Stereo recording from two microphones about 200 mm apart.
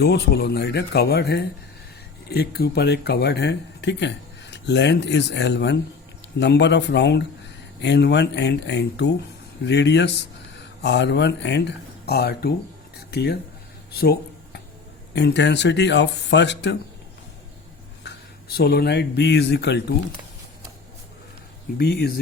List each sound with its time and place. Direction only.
0.0 s speech: 55° left (ahead or behind)
13.0 s a sound: 55° left (ahead or behind)
15.1 s speech: 60° left (ahead or behind)
18.0 s speech: 55° left (ahead or behind)
21.8 s speech: 50° left (ahead or behind)